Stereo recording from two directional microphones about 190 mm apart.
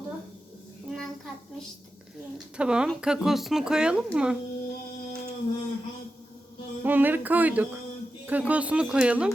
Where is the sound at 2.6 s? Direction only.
5° right (ahead or behind).